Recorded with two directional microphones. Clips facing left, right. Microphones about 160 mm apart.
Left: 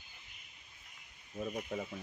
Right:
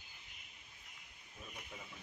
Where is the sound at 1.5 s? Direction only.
50° left (ahead or behind).